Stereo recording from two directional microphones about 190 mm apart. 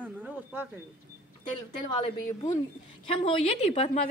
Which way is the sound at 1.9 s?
25° left (ahead or behind).